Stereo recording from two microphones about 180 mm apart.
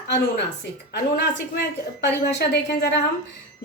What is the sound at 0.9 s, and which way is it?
A woman's voice, 65° left (ahead or behind).